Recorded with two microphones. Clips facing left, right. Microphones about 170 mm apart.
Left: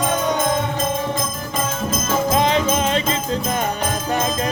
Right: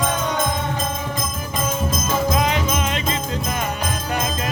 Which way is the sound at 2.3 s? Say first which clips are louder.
Left 3 dB; 30° left (ahead or behind).